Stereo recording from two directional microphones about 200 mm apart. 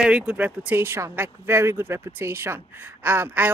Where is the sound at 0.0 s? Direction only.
5° right (ahead or behind).